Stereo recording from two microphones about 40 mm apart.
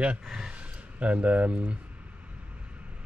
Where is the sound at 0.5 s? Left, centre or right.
Right.